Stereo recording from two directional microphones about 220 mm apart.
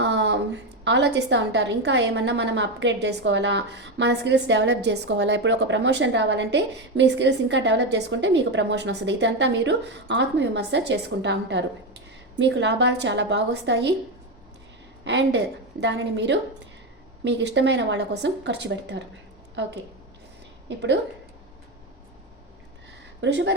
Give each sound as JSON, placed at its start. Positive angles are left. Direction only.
{"t": 0.0, "sound": "a woman's voice", "side_deg": -50}
{"t": 15.0, "sound": "a woman's voice", "side_deg": -55}
{"t": 20.7, "sound": "a woman's voice", "side_deg": -50}
{"t": 23.2, "sound": "a woman's voice", "side_deg": -55}